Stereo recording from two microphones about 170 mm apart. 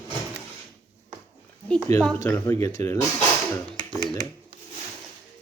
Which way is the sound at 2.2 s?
10° left (ahead or behind).